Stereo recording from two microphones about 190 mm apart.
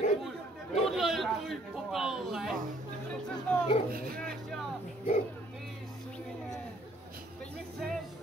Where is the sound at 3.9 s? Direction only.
50° right (ahead or behind).